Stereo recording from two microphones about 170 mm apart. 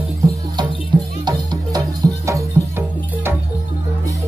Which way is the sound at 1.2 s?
25° right (ahead or behind).